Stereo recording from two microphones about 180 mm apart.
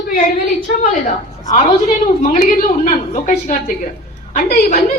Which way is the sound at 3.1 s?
45° left (ahead or behind).